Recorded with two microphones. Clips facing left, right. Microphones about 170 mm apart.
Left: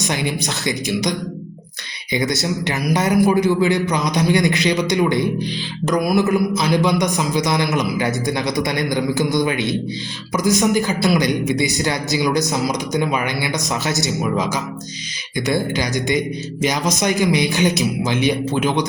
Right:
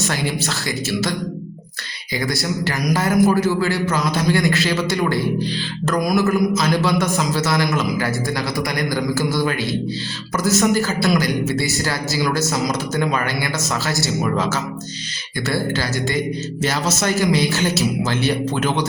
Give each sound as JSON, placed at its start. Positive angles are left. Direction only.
{"t": 0.1, "sound": "speech", "side_deg": 20}
{"t": 2.1, "sound": "a man's voice", "side_deg": 20}